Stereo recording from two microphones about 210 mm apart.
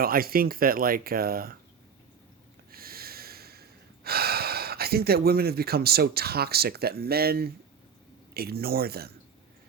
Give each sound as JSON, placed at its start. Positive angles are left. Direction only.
{"t": 0.0, "sound": "speech", "side_deg": -45}
{"t": 2.7, "sound": "breathing", "side_deg": -45}
{"t": 8.3, "sound": "speech", "side_deg": -45}